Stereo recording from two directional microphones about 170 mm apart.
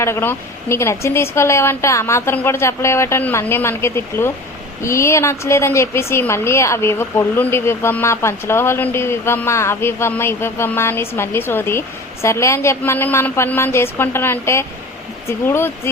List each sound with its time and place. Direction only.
0.0 s a woman's voice: 15° left (ahead or behind)